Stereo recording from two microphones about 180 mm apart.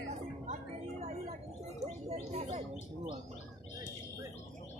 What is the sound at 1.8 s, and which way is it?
Gargling, 35° right (ahead or behind).